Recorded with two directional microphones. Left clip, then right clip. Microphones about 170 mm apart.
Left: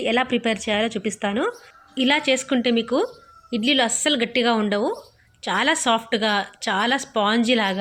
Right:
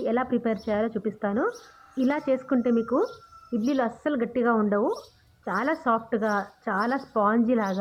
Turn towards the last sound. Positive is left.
turn(degrees=35)  # may be behind; listen again after turning